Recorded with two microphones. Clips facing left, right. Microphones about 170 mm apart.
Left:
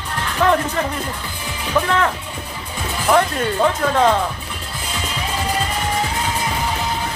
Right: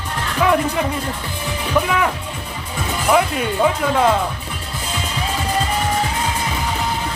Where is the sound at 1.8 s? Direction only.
10° right (ahead or behind).